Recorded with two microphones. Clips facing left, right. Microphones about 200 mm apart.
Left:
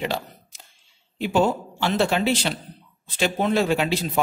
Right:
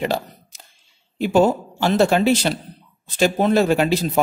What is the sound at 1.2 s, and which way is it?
Speech, 45° right (ahead or behind).